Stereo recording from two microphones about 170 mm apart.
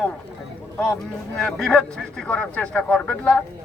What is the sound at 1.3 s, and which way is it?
A man's voice, 5° left (ahead or behind).